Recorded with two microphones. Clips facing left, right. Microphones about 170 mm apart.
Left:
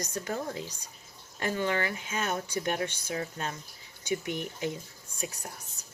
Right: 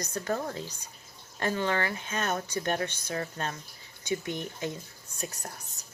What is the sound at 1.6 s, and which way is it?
Speech, 15° left (ahead or behind).